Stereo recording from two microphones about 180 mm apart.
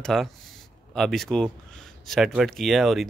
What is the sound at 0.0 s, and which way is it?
Speech, centre (ahead or behind).